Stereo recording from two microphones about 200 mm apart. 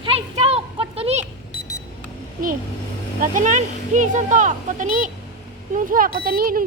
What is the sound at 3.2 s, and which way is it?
Speech, 40° right (ahead or behind).